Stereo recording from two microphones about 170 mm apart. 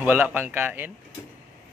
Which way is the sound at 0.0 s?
10° right (ahead or behind).